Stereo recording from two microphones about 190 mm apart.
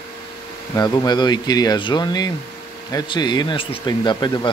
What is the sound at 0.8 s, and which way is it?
Speech, 20° left (ahead or behind).